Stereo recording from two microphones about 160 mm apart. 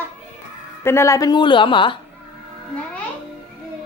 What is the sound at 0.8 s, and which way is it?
A woman's voice, 15° left (ahead or behind).